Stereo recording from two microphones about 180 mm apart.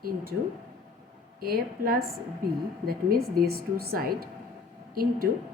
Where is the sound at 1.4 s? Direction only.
55° right (ahead or behind).